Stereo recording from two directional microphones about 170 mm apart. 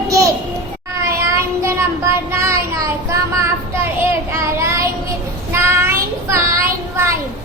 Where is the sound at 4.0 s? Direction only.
15° right (ahead or behind).